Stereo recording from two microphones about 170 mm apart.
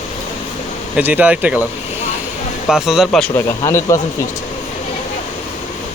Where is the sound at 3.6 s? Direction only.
15° left (ahead or behind).